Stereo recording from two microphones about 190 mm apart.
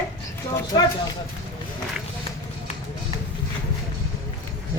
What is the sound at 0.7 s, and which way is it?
Speech, 25° left (ahead or behind).